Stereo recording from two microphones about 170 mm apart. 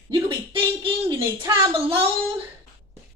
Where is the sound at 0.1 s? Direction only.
30° right (ahead or behind).